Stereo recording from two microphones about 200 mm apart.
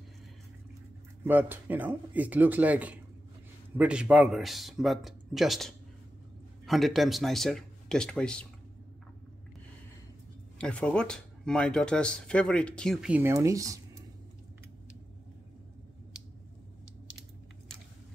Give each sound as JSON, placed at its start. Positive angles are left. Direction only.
{"t": 1.2, "sound": "speech", "side_deg": -10}
{"t": 10.6, "sound": "speech", "side_deg": 5}
{"t": 17.2, "sound": "a sound", "side_deg": -15}